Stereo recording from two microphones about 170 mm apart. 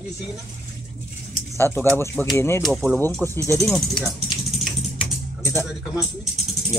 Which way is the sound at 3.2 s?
15° right (ahead or behind).